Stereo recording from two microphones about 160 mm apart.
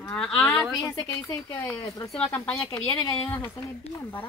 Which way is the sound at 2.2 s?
10° left (ahead or behind).